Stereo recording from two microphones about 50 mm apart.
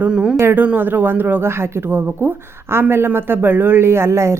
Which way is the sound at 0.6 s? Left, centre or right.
Right.